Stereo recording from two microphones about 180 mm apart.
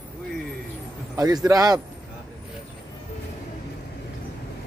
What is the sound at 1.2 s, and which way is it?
Speech, 20° right (ahead or behind).